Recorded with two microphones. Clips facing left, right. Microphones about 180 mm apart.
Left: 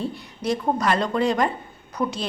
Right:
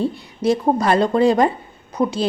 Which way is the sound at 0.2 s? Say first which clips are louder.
Right 7 dB; 30° right (ahead or behind).